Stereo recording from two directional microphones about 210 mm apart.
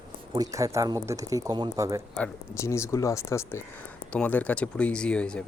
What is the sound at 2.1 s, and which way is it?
Speech, 10° left (ahead or behind).